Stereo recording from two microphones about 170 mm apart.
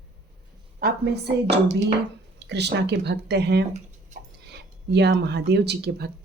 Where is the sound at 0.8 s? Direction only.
65° right (ahead or behind).